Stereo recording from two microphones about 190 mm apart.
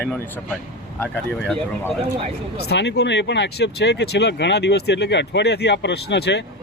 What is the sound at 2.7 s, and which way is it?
Speech, 65° left (ahead or behind).